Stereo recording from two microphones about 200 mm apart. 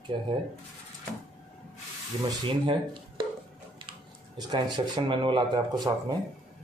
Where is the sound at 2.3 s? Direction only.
25° right (ahead or behind).